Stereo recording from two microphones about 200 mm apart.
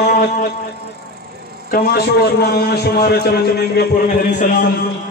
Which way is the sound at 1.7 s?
50° left (ahead or behind).